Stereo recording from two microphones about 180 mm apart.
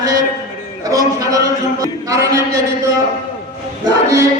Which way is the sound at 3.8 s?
15° right (ahead or behind).